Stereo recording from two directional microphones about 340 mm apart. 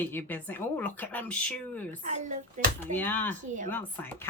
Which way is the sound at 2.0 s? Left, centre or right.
Right.